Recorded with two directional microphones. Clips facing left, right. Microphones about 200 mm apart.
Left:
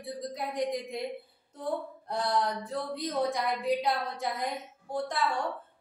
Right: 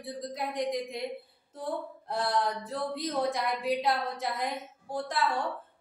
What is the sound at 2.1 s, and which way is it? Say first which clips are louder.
Speech: even; centre (ahead or behind).